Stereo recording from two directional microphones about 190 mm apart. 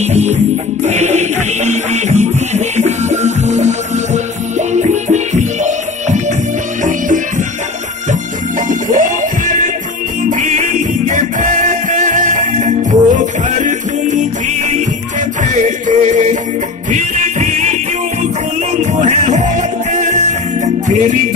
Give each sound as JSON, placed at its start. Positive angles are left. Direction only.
{"t": 0.0, "sound": "music", "side_deg": -35}
{"t": 8.6, "sound": "music", "side_deg": -45}
{"t": 15.4, "sound": "music", "side_deg": -40}
{"t": 18.8, "sound": "music", "side_deg": -40}